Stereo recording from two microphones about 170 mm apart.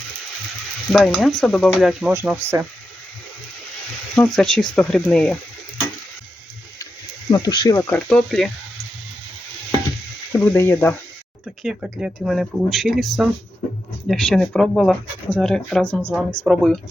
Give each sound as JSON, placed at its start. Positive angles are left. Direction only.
{"t": 0.9, "sound": "speech", "side_deg": 0}
{"t": 4.1, "sound": "speech", "side_deg": 5}
{"t": 7.3, "sound": "speech", "side_deg": 25}
{"t": 10.3, "sound": "speech", "side_deg": 10}
{"t": 11.6, "sound": "speech", "side_deg": -5}